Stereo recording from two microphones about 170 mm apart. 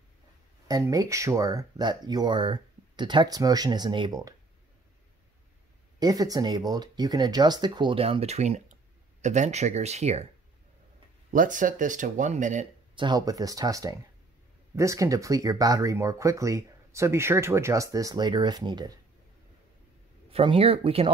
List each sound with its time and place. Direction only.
0.7 s speech: 20° right (ahead or behind)
5.9 s speech: 20° right (ahead or behind); by 10.2 s 40° right (ahead or behind)
11.3 s speech: 50° right (ahead or behind)
12.9 s speech: 25° right (ahead or behind)
20.2 s speech: 35° right (ahead or behind)